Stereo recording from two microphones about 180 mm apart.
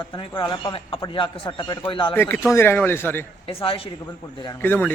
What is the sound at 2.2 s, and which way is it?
A man's voice, 10° left (ahead or behind).